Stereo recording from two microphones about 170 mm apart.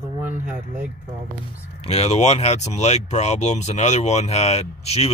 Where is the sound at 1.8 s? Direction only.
35° left (ahead or behind).